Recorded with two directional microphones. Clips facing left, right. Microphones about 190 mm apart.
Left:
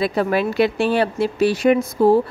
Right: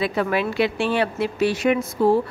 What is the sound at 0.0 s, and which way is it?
A woman's voice, 35° left (ahead or behind).